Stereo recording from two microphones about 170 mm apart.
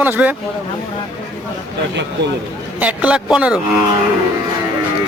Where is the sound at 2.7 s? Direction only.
10° right (ahead or behind).